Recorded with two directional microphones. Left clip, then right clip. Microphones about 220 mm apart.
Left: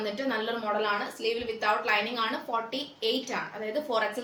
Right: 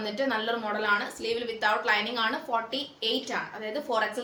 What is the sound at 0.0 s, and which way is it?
Speech, 15° right (ahead or behind).